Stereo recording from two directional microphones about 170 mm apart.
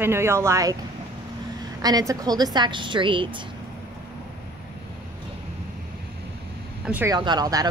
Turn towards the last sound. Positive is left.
turn(degrees=-20)  # may be behind; listen again after turning